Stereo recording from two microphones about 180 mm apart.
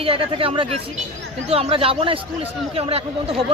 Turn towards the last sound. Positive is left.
turn(degrees=-35)  # may be behind; listen again after turning